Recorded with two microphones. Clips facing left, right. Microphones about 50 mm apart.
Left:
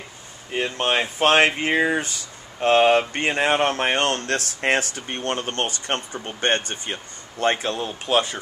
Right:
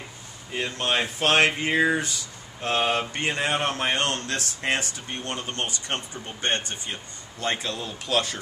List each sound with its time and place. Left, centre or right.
0.5 s speech: left
2.6 s speech: left